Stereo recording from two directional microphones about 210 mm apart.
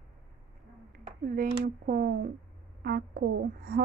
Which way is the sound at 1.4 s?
45° right (ahead or behind).